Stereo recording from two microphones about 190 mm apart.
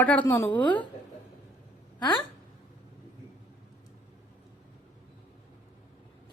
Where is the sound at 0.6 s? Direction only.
25° left (ahead or behind).